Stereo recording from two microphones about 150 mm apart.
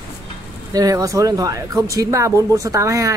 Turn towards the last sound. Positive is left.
turn(degrees=-20)  # may be behind; listen again after turning